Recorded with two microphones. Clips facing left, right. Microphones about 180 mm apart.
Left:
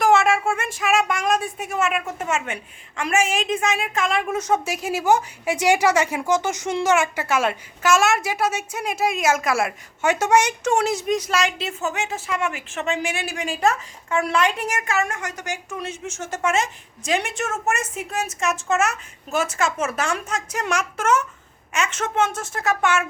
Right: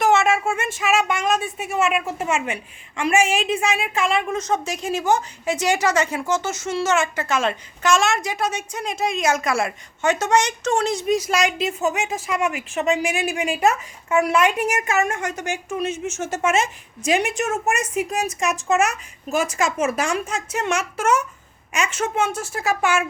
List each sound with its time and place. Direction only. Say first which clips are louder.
0.0 s a child's voice: even; centre (ahead or behind)
4.3 s a woman's voice: left 1 dB; 10° left (ahead or behind); by 23.0 s 10° right (ahead or behind)